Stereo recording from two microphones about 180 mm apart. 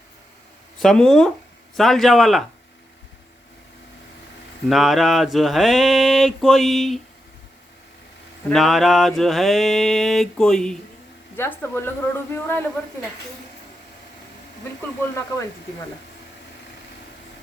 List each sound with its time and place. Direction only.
0.8 s mantra: 5° left (ahead or behind)
4.7 s mantra: centre (ahead or behind)
8.5 s mantra: centre (ahead or behind)
11.3 s a woman's voice: 10° left (ahead or behind)